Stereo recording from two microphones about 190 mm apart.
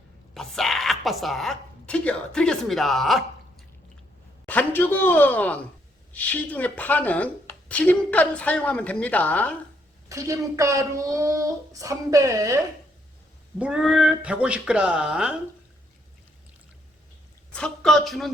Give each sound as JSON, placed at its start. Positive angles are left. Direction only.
{"t": 0.3, "sound": "speech", "side_deg": 0}
{"t": 4.4, "sound": "a woman's voice", "side_deg": 10}
{"t": 10.1, "sound": "child singing", "side_deg": -15}
{"t": 13.6, "sound": "speech", "side_deg": -5}
{"t": 17.5, "sound": "speech", "side_deg": 5}